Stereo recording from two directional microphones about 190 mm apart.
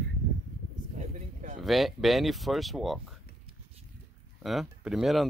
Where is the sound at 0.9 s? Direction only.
40° right (ahead or behind).